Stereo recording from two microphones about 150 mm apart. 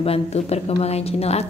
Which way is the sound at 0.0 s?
40° left (ahead or behind).